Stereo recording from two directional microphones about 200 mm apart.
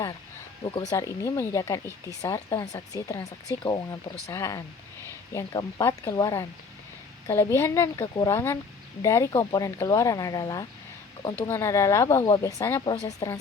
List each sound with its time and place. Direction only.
0.6 s speech: 20° left (ahead or behind)